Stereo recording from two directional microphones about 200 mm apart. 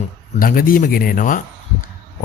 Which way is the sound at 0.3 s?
45° left (ahead or behind).